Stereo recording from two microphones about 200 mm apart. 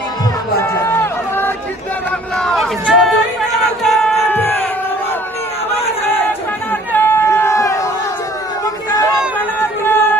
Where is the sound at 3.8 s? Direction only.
Centre (ahead or behind).